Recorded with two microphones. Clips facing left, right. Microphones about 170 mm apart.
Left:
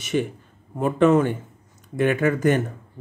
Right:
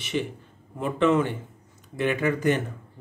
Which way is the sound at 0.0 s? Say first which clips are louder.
Left 5 dB; 45° left (ahead or behind).